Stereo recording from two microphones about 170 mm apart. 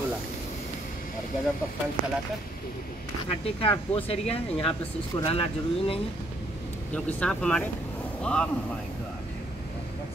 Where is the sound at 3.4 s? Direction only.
35° left (ahead or behind).